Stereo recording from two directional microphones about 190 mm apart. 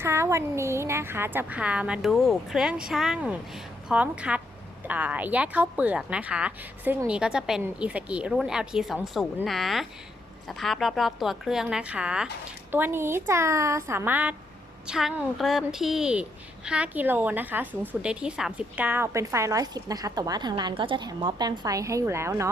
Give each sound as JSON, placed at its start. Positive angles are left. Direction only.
{"t": 0.0, "sound": "a woman's voice", "side_deg": -15}